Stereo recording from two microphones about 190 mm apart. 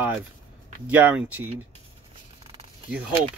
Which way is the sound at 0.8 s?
10° right (ahead or behind).